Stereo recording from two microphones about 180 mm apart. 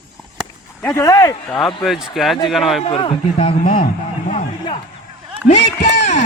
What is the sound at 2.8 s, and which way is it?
Speech, 30° left (ahead or behind).